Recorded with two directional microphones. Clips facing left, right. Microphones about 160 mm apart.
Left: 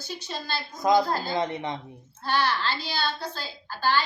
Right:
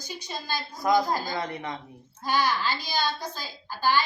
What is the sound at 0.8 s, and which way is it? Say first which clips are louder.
Speech: left 2 dB; 20° left (ahead or behind).